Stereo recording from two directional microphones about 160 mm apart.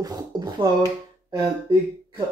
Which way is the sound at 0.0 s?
25° right (ahead or behind).